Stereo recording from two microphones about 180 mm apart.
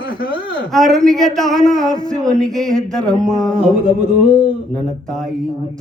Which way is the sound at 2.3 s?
Centre (ahead or behind).